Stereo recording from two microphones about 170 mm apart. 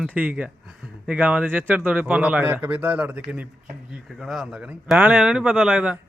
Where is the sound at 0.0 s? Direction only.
10° right (ahead or behind).